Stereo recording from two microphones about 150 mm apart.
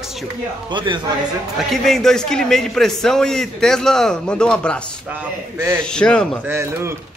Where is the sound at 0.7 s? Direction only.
30° right (ahead or behind).